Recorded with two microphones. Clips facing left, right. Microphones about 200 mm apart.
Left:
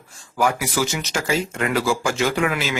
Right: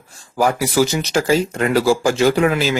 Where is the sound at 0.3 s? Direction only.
35° right (ahead or behind).